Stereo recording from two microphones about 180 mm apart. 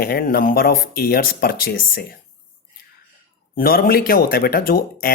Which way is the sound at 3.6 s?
55° left (ahead or behind).